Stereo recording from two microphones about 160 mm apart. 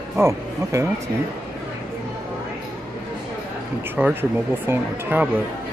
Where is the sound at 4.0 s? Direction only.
10° right (ahead or behind).